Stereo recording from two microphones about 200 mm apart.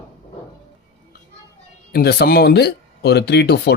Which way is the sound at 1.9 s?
55° left (ahead or behind).